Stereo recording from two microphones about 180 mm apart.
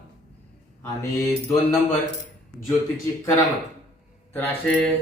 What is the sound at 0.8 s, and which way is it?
Speech, 15° left (ahead or behind).